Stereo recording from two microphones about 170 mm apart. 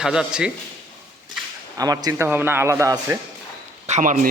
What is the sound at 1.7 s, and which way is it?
A man's voice, 20° right (ahead or behind).